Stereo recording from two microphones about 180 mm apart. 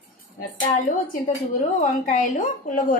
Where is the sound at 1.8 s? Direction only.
45° left (ahead or behind).